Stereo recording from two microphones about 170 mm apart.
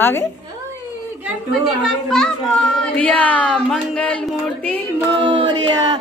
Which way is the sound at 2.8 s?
5° left (ahead or behind).